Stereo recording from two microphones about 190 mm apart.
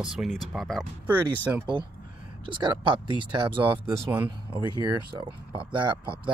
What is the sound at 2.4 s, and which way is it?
Speech, 25° right (ahead or behind).